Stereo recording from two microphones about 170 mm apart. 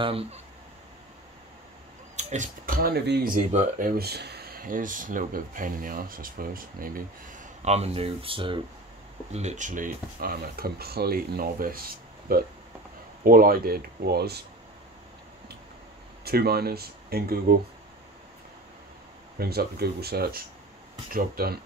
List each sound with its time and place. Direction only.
0.0 s speech: 35° right (ahead or behind)
2.1 s speech: 45° right (ahead or behind)
9.3 s speech: 40° right (ahead or behind); by 14.4 s 70° right (ahead or behind)
16.3 s speech: 65° right (ahead or behind)
19.3 s speech: 65° right (ahead or behind)